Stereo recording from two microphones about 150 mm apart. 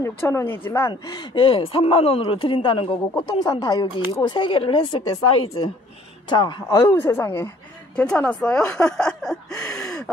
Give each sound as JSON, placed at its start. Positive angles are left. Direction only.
{"t": 0.0, "sound": "speech", "side_deg": 20}
{"t": 1.1, "sound": "speech", "side_deg": 35}
{"t": 6.8, "sound": "a woman's voice", "side_deg": 15}